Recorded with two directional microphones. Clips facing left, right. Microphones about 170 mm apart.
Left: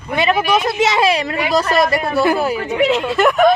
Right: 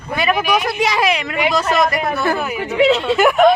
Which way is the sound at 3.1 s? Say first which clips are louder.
Right 1 dB; centre (ahead or behind).